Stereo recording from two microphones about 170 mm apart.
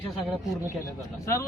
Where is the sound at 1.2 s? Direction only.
15° left (ahead or behind).